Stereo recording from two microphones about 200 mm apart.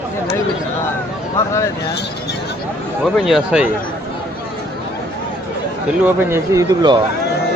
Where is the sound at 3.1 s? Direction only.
5° right (ahead or behind).